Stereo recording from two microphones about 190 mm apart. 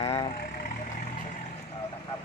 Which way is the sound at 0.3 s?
50° left (ahead or behind).